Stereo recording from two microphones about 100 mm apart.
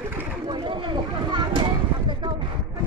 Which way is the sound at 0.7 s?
55° right (ahead or behind).